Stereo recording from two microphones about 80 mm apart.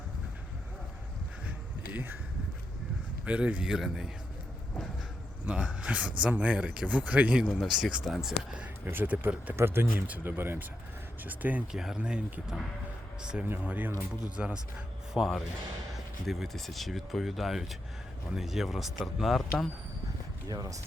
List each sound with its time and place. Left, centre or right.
1.9 s speech: right
3.2 s speech: centre
5.5 s speech: centre
7.4 s speech: centre
8.9 s speech: right
11.7 s speech: centre
13.4 s speech: right
15.1 s speech: centre
20.5 s speech: right